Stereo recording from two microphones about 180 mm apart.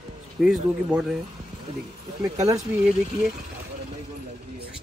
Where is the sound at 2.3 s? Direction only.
20° right (ahead or behind).